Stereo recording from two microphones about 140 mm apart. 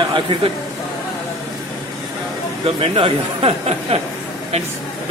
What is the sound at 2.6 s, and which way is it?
Speech, 40° right (ahead or behind).